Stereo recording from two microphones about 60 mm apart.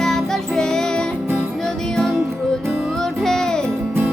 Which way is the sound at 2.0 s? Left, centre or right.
Centre.